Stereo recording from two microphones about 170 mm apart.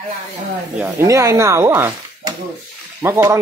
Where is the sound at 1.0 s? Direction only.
20° right (ahead or behind).